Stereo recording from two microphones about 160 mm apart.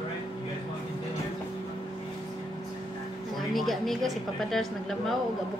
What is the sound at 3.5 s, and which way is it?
A woman's voice, centre (ahead or behind).